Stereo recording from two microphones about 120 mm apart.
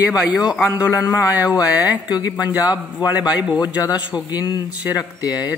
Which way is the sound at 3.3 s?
5° right (ahead or behind).